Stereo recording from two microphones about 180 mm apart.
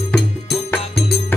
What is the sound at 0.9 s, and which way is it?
Music, 65° left (ahead or behind).